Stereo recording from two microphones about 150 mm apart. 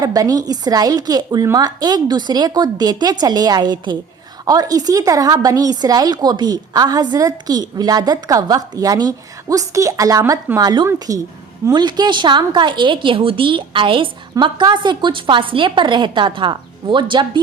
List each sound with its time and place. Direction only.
0.0 s a woman's voice: 25° right (ahead or behind)